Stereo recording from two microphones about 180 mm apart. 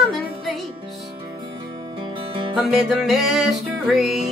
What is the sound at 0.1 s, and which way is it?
Music, centre (ahead or behind).